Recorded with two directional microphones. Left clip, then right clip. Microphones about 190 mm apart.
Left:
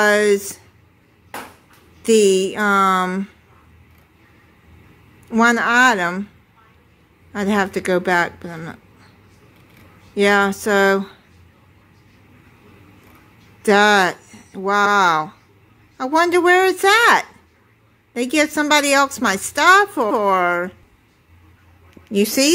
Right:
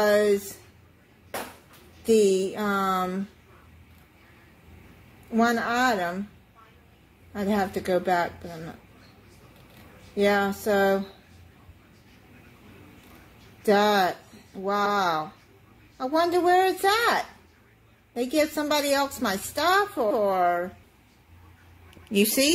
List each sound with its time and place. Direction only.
0.0 s a sound: 40° left (ahead or behind)
2.0 s a woman's voice: 40° left (ahead or behind)
5.3 s a woman's voice: 40° left (ahead or behind)
7.3 s a woman's voice: 40° left (ahead or behind)
10.1 s a woman's voice: 40° left (ahead or behind)
13.7 s a woman's voice: 35° left (ahead or behind)
21.9 s a woman's voice: 25° left (ahead or behind)